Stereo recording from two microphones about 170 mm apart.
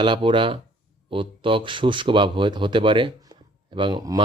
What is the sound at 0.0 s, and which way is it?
Speech, 30° right (ahead or behind).